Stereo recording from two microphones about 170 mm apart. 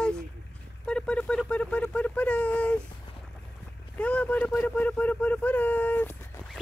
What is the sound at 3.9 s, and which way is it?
Speech, 10° left (ahead or behind).